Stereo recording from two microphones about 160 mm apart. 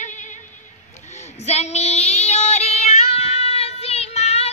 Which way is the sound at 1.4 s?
45° left (ahead or behind).